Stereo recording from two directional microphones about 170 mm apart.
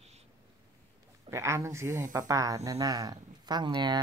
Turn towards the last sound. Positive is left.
turn(degrees=-25)  # may be behind; listen again after turning